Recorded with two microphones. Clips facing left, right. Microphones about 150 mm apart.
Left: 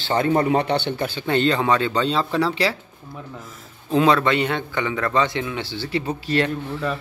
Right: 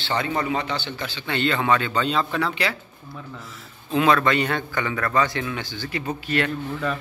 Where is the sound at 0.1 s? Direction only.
45° left (ahead or behind).